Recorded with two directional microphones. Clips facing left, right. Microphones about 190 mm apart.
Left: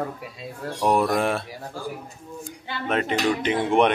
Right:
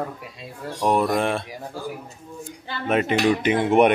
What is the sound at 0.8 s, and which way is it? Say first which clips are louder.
Speech: even; 5° left (ahead or behind).